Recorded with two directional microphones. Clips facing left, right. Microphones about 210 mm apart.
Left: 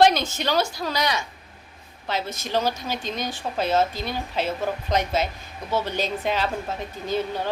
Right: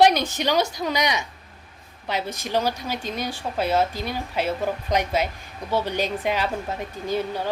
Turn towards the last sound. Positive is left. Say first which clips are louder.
# right 1 dB
turn(degrees=-10)  # may be behind; listen again after turning